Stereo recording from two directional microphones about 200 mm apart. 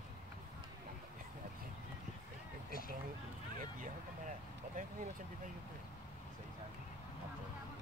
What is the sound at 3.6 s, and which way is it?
Vehicle, 40° right (ahead or behind).